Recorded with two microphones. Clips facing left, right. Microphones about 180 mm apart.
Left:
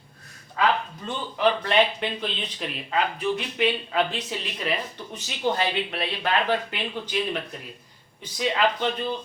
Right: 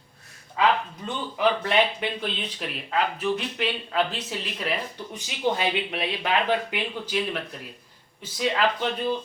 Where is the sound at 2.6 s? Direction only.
Centre (ahead or behind).